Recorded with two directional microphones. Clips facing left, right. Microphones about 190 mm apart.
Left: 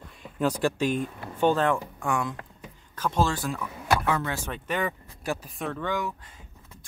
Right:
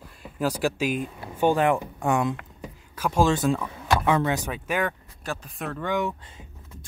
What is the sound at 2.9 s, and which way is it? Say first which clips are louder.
Speech: right 4 dB; 10° right (ahead or behind).